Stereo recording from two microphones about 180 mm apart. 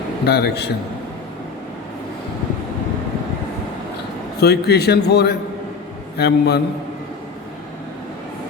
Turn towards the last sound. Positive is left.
turn(degrees=65)  # may be behind; listen again after turning